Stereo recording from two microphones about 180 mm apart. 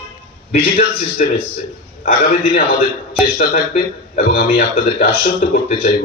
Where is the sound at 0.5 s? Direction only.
45° left (ahead or behind).